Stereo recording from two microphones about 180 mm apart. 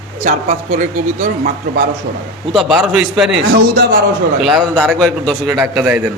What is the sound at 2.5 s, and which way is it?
Speech, centre (ahead or behind).